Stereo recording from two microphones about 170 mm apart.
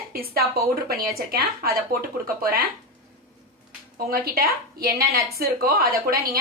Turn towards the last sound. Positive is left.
turn(degrees=-60)  # may be behind; listen again after turning